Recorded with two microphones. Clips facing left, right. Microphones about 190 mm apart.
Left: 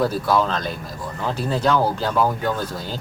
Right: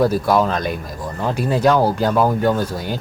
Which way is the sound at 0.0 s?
15° right (ahead or behind).